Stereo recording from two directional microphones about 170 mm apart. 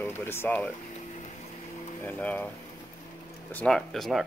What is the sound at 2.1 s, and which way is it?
Speech, 10° left (ahead or behind).